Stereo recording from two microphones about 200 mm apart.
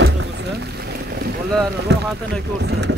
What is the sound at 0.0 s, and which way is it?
Boat, 60° right (ahead or behind).